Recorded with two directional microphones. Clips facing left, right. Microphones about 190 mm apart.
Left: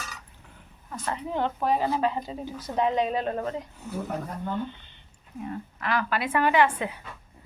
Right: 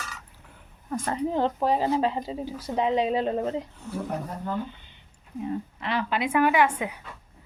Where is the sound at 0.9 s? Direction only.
40° right (ahead or behind); by 3.5 s 25° right (ahead or behind).